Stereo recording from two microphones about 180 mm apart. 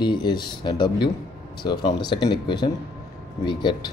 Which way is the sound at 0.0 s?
25° left (ahead or behind).